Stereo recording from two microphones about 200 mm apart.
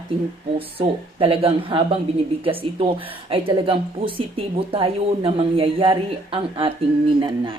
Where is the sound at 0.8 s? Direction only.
30° right (ahead or behind).